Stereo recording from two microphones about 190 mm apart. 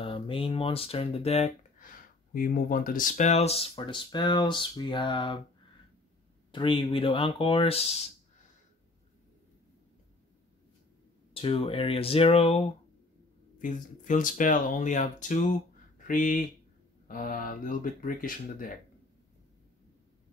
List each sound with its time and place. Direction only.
0.0 s speech: 30° left (ahead or behind)
6.5 s speech: 25° left (ahead or behind)
11.3 s speech: 30° left (ahead or behind)
13.6 s speech: 45° left (ahead or behind)